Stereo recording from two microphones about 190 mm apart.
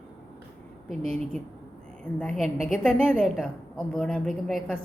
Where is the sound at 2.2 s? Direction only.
Centre (ahead or behind).